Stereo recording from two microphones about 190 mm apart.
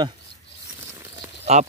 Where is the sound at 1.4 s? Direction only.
35° right (ahead or behind).